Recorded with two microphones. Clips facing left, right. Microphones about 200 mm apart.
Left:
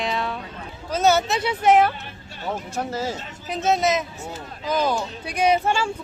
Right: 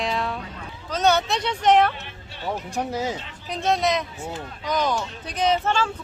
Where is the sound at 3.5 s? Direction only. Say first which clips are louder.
Left 2 dB; 5° left (ahead or behind).